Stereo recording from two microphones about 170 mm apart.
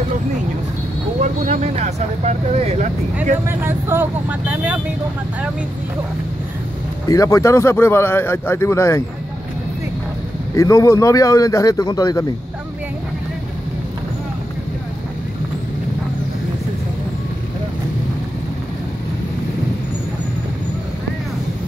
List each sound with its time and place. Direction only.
1.2 s speech: 40° right (ahead or behind)
3.4 s speech: 15° right (ahead or behind)
7.1 s a man's voice: 20° left (ahead or behind)
10.5 s speech: 20° left (ahead or behind)